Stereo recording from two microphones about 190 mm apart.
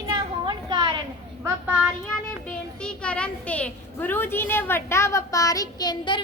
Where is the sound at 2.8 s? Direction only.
5° left (ahead or behind).